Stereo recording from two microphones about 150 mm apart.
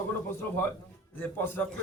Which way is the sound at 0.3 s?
15° left (ahead or behind).